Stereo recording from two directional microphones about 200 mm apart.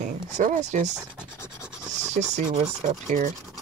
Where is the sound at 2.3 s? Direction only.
35° right (ahead or behind).